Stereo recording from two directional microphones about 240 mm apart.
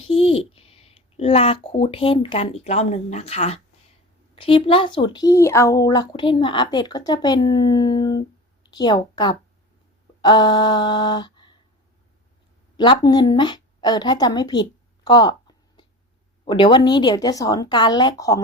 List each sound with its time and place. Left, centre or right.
0.1 s a woman's voice: left
12.7 s a woman's voice: centre